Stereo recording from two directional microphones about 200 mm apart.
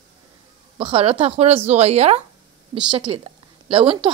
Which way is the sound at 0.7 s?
30° right (ahead or behind).